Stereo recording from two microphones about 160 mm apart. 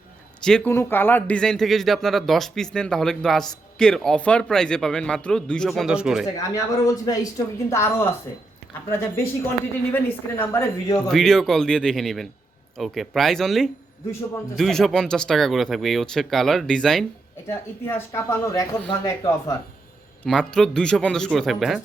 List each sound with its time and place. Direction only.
0.4 s speech: 5° left (ahead or behind)
0.7 s speech: 15° left (ahead or behind); by 6.2 s 5° right (ahead or behind)
6.5 s a man's voice: 20° left (ahead or behind)
11.1 s speech: centre (ahead or behind)
17.5 s a man's voice: 15° left (ahead or behind)
20.2 s speech: 5° left (ahead or behind)